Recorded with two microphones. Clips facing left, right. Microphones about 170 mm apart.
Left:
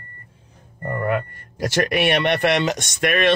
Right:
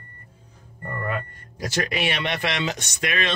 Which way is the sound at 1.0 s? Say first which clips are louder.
Left 7 dB; 60° left (ahead or behind).